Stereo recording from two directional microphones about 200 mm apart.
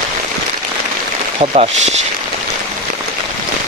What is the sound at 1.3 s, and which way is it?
Speech, 30° right (ahead or behind).